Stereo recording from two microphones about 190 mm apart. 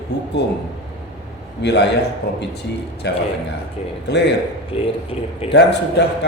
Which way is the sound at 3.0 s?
65° left (ahead or behind).